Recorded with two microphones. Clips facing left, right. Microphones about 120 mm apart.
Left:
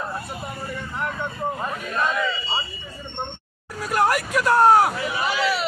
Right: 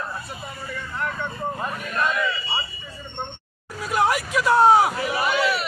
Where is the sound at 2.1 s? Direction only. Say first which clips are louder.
Left 1 dB; 25° left (ahead or behind).